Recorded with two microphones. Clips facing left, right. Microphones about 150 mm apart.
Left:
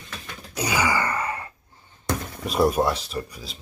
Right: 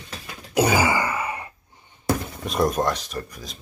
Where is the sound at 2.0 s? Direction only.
Centre (ahead or behind).